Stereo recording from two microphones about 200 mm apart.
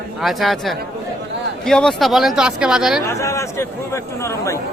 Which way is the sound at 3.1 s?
15° left (ahead or behind).